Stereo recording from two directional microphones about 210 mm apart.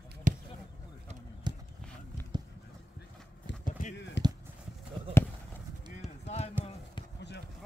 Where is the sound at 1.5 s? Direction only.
20° right (ahead or behind).